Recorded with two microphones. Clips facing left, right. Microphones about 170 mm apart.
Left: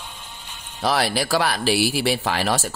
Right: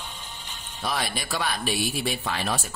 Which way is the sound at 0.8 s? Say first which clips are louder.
Left 8 dB; 90° left.